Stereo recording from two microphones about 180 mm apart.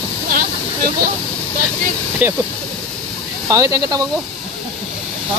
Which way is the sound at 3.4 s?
20° right (ahead or behind).